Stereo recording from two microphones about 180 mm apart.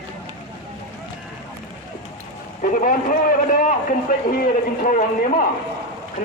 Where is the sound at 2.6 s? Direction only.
50° left (ahead or behind).